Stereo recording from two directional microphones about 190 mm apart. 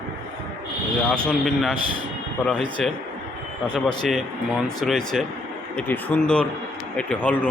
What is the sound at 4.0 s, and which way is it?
A man's voice, centre (ahead or behind).